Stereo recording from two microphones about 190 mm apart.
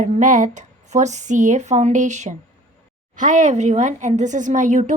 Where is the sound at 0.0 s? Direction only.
40° right (ahead or behind).